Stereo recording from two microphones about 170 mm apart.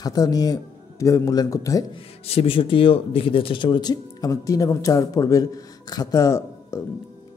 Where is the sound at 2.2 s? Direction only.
35° left (ahead or behind).